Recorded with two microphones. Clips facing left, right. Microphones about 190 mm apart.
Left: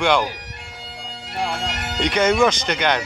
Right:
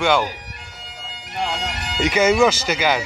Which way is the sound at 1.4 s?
5° right (ahead or behind).